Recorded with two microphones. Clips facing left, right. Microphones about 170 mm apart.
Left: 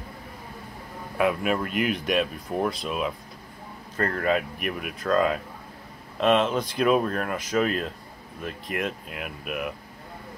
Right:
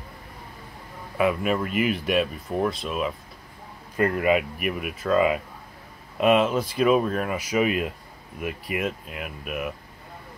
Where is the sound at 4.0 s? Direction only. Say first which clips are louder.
Right 3 dB; 10° right (ahead or behind).